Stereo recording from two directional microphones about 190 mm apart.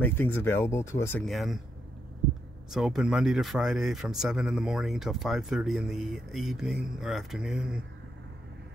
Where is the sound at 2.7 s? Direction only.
Centre (ahead or behind).